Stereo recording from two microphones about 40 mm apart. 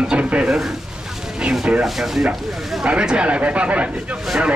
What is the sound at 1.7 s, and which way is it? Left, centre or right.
Speech, right.